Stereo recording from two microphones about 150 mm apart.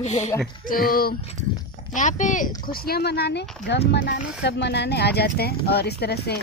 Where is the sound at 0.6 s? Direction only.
75° left (ahead or behind).